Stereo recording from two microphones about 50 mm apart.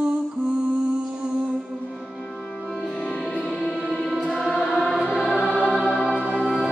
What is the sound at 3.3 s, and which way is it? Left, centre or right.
Music, centre.